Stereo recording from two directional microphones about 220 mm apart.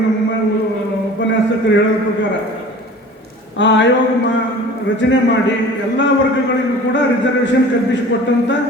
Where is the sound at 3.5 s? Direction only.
55° left (ahead or behind).